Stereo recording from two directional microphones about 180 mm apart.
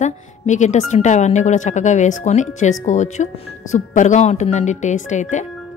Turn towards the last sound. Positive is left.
turn(degrees=45)  # may be behind; listen again after turning